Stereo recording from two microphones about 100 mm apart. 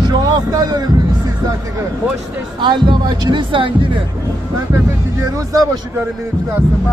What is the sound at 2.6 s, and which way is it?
Speech, 50° right (ahead or behind).